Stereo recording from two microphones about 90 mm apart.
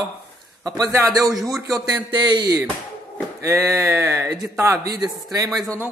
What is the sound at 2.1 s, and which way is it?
Speech, 55° right (ahead or behind).